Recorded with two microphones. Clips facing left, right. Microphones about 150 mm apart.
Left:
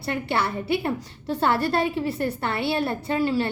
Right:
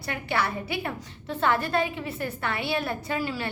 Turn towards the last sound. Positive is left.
turn(degrees=30)  # may be behind; listen again after turning